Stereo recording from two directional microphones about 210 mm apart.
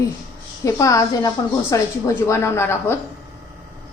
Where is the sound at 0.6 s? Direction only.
15° left (ahead or behind).